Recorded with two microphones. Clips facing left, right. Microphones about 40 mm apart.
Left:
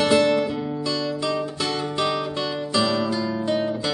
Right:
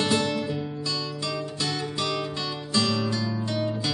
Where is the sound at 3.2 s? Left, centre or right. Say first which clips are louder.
Left 6 dB; left.